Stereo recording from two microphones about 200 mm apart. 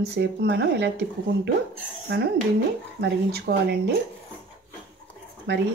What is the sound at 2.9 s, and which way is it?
Speech, 55° right (ahead or behind).